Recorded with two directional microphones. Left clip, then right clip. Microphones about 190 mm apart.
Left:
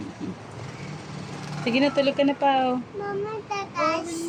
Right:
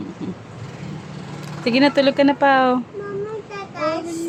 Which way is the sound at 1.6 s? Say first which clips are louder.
Right 6 dB; 20° right (ahead or behind).